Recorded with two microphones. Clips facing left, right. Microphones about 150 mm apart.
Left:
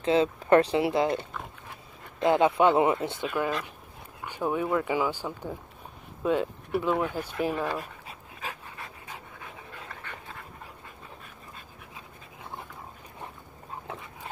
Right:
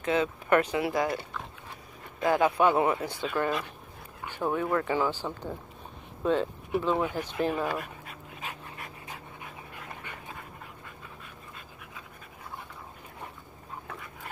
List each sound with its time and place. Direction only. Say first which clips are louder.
0.0 s speech: left 4 dB; 30° left (ahead or behind)
3.3 s speech: right 1 dB; centre (ahead or behind)
7.0 s speech: even; 10° right (ahead or behind)
8.4 s dog: left 2 dB; 30° left (ahead or behind)
10.1 s dog: left 1 dB; 15° right (ahead or behind)
13.8 s dog: left 2 dB; 25° left (ahead or behind)